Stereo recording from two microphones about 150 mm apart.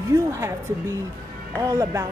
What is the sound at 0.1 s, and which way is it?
A woman's voice, 20° right (ahead or behind).